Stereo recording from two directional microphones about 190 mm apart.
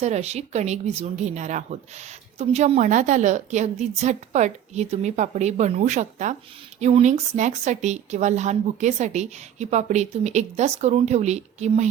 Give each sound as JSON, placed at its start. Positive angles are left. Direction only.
{"t": 0.0, "sound": "speech", "side_deg": -35}